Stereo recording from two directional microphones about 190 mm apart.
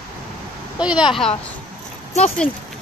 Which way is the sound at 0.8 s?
5° right (ahead or behind).